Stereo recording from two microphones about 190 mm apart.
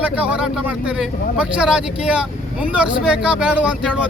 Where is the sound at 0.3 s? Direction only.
5° right (ahead or behind).